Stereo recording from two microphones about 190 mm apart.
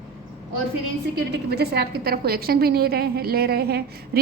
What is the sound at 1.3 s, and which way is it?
A woman's voice, 60° right (ahead or behind).